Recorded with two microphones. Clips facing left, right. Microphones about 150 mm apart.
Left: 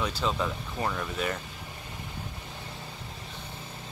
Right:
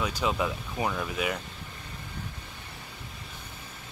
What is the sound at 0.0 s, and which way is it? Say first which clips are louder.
Speech: right 1 dB; 10° right (ahead or behind).